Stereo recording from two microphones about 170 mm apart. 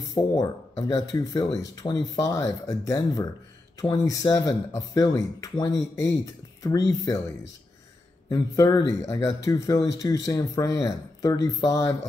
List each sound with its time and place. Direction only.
0.0 s speech: 20° left (ahead or behind)
8.3 s speech: 25° left (ahead or behind)